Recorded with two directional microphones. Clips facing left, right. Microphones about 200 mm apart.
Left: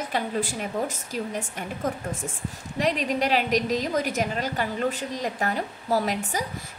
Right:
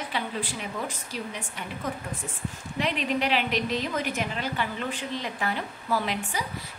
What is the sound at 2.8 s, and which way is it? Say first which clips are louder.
A woman's voice: left 3 dB; 40° left (ahead or behind).